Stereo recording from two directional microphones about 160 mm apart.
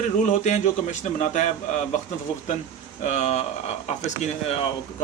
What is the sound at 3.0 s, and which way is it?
Speech, 45° left (ahead or behind).